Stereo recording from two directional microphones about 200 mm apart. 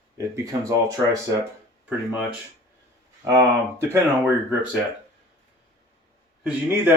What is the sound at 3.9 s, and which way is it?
Speech, 10° right (ahead or behind).